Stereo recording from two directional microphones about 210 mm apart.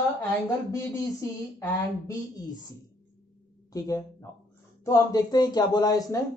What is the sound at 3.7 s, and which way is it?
A woman's voice, 15° left (ahead or behind).